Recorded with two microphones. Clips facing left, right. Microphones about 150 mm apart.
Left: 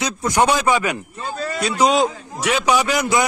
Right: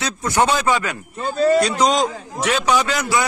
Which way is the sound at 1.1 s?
35° right (ahead or behind).